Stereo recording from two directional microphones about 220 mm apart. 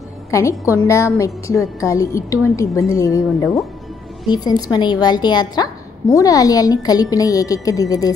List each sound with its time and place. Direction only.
0.3 s a woman's voice: 15° left (ahead or behind)